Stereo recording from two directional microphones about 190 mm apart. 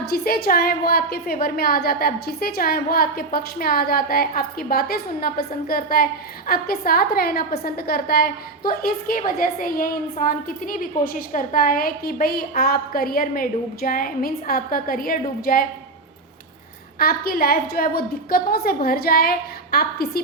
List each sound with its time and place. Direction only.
0.0 s a woman's voice: 55° left (ahead or behind)
17.0 s a woman's voice: 50° left (ahead or behind)